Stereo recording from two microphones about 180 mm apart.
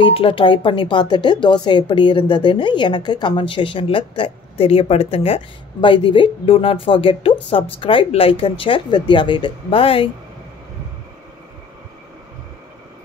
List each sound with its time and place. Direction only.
0.0 s a woman's voice: 30° left (ahead or behind)